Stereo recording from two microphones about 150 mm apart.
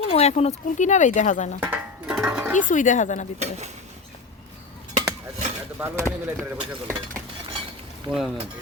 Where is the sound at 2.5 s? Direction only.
55° left (ahead or behind).